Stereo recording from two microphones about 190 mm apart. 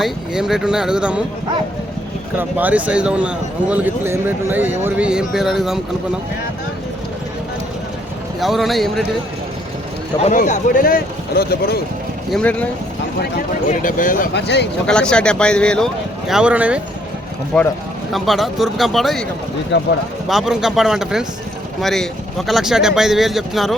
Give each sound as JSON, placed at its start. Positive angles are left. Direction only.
{"t": 0.0, "sound": "speech", "side_deg": -5}
{"t": 2.3, "sound": "speech", "side_deg": -10}
{"t": 8.4, "sound": "speech", "side_deg": 0}
{"t": 10.2, "sound": "speech", "side_deg": 40}
{"t": 12.3, "sound": "speech", "side_deg": 5}
{"t": 13.7, "sound": "speech", "side_deg": 45}
{"t": 14.3, "sound": "speech", "side_deg": 65}
{"t": 14.8, "sound": "speech", "side_deg": 5}
{"t": 17.5, "sound": "speech", "side_deg": 5}
{"t": 19.7, "sound": "speech", "side_deg": 70}
{"t": 20.2, "sound": "speech", "side_deg": 0}